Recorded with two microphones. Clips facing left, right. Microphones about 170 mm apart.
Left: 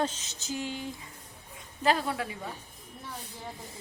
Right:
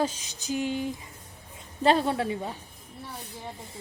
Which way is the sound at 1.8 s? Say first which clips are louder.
Right 5 dB; 30° right (ahead or behind).